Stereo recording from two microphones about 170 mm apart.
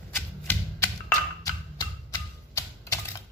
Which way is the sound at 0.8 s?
20° left (ahead or behind).